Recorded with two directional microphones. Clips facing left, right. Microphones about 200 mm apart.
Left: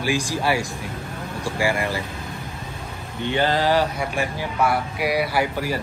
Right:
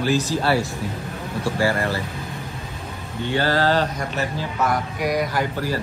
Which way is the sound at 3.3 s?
20° left (ahead or behind).